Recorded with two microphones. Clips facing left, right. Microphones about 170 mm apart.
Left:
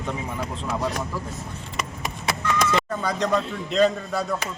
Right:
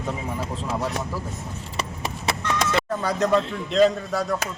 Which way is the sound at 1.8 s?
30° right (ahead or behind).